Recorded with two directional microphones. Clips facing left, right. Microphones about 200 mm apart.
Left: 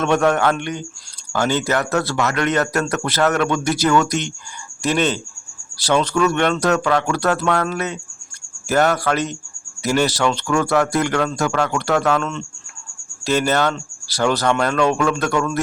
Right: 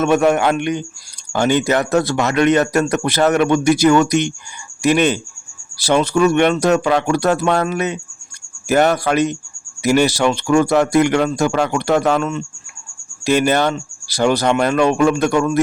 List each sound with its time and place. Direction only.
0.0 s a man's voice: 5° right (ahead or behind)